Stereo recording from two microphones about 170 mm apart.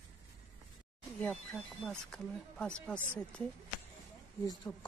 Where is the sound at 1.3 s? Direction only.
Centre (ahead or behind).